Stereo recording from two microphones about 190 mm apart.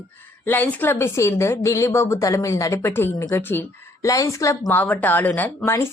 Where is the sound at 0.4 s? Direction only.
10° left (ahead or behind).